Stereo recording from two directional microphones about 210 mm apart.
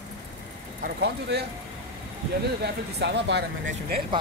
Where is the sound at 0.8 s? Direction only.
50° right (ahead or behind).